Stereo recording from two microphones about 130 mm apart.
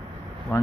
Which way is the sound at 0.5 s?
25° left (ahead or behind).